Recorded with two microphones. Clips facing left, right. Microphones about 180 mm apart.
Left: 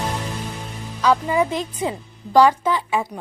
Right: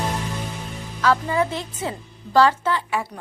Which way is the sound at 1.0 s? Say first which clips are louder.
Left 2 dB; 15° left (ahead or behind).